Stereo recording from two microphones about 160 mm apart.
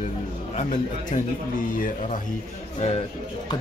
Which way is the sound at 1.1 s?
50° left (ahead or behind).